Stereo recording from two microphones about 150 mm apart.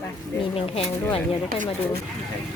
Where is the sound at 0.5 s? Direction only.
40° left (ahead or behind).